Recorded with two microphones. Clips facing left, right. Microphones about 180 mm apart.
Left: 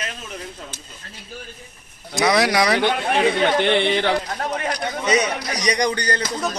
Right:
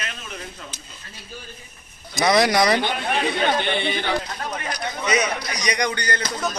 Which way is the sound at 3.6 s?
70° left (ahead or behind).